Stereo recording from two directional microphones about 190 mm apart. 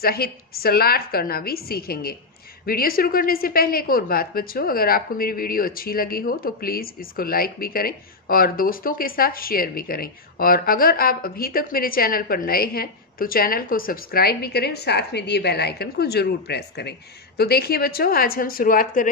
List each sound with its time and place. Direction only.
0.0 s a woman's voice: 55° left (ahead or behind)